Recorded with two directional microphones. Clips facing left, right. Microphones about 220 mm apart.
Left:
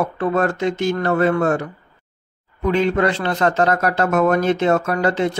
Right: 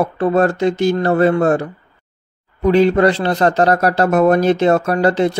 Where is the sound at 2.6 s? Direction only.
35° right (ahead or behind).